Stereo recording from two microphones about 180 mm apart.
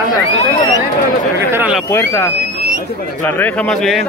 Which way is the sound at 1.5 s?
10° right (ahead or behind).